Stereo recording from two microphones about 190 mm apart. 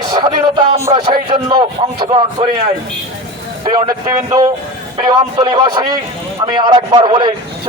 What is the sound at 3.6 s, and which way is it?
A man's voice, 20° right (ahead or behind).